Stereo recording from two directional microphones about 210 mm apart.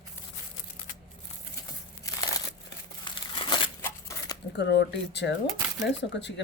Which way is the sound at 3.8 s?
15° left (ahead or behind).